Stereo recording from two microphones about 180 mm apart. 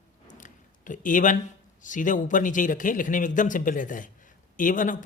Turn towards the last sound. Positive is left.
turn(degrees=45)  # may be behind; listen again after turning